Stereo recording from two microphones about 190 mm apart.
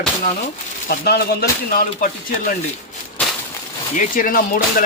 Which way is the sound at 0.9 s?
55° left (ahead or behind).